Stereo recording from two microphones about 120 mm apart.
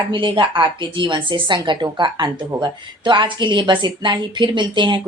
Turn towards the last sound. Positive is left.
turn(degrees=-40)  # may be behind; listen again after turning